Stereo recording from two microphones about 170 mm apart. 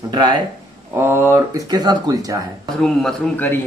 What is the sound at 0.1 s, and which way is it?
Speech, 25° right (ahead or behind).